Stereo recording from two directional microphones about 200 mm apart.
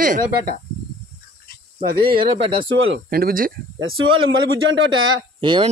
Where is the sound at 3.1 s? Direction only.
45° right (ahead or behind).